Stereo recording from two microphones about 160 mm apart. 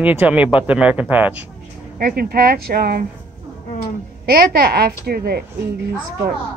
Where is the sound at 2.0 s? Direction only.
70° right (ahead or behind).